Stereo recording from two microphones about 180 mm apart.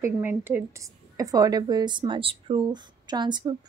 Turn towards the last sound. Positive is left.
turn(degrees=-25)  # may be behind; listen again after turning